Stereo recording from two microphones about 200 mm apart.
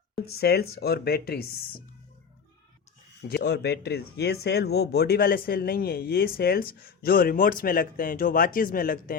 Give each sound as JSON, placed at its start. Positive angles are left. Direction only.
{"t": 0.3, "sound": "speech", "side_deg": 55}
{"t": 3.2, "sound": "speech", "side_deg": 55}